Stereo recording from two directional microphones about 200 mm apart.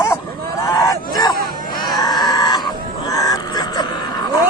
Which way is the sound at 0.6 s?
15° left (ahead or behind).